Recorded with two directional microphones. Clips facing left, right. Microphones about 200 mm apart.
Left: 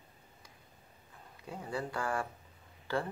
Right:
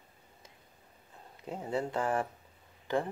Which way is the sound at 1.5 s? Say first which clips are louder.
Right 5 dB; 20° right (ahead or behind).